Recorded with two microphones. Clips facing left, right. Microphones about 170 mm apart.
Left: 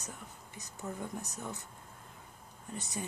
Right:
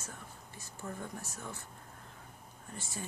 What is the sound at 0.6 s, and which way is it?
Speech, 20° left (ahead or behind).